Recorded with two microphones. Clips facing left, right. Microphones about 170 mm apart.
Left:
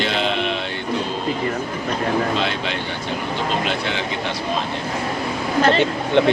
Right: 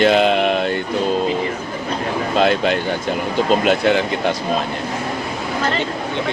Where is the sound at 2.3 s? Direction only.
45° right (ahead or behind).